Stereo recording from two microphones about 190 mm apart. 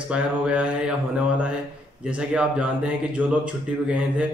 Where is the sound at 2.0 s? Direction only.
5° right (ahead or behind).